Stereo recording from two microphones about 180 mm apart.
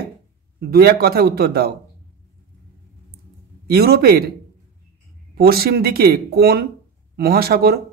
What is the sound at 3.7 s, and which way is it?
Speech, 60° right (ahead or behind).